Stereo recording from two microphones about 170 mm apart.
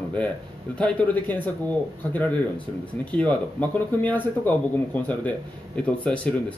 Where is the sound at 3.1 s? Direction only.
5° left (ahead or behind).